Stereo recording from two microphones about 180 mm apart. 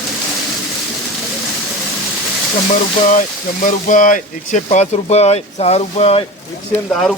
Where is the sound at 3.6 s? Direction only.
45° left (ahead or behind).